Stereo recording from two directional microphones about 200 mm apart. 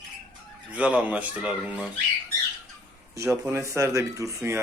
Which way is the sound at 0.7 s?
5° right (ahead or behind).